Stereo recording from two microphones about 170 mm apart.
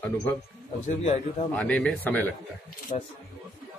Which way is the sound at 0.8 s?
40° left (ahead or behind).